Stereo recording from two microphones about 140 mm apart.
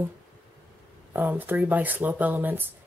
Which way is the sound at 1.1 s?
15° right (ahead or behind).